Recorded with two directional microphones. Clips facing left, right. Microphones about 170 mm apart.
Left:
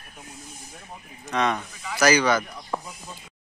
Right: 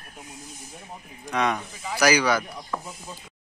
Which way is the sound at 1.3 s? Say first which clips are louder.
Even; 10° right (ahead or behind).